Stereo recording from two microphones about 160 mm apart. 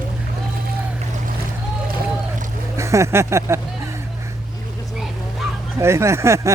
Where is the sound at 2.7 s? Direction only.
20° right (ahead or behind).